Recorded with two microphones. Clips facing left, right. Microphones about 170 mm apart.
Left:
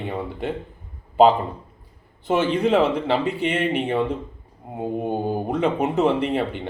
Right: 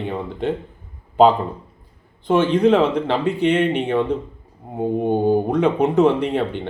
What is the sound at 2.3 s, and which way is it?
Speech, 5° left (ahead or behind).